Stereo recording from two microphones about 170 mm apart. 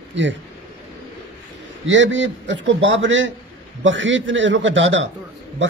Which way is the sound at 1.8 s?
90° right.